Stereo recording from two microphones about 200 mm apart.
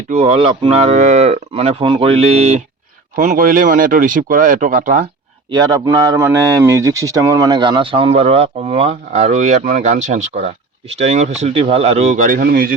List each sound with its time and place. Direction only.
0.1 s moo: 35° right (ahead or behind)
5.5 s speech: 20° right (ahead or behind)
10.9 s moo: 35° right (ahead or behind); by 12.7 s 50° right (ahead or behind)